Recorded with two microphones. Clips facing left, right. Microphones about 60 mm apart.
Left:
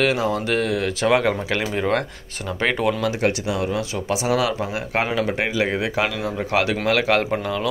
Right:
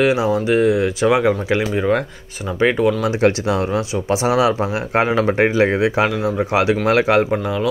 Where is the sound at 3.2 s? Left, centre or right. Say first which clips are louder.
Right 5 dB; right.